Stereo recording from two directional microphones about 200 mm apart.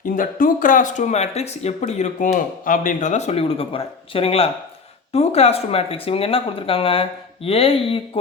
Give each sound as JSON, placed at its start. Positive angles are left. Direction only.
{"t": 0.0, "sound": "speech", "side_deg": 45}